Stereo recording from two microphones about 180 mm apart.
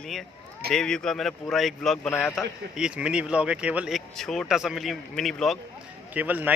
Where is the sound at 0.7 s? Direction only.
5° left (ahead or behind).